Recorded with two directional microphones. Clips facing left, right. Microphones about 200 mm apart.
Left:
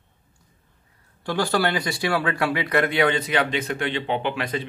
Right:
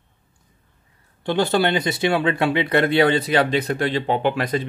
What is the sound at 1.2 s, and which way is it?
Speech, 25° right (ahead or behind).